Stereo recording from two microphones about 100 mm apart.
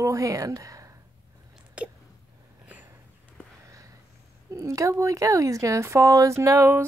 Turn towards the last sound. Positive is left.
turn(degrees=-30)  # may be behind; listen again after turning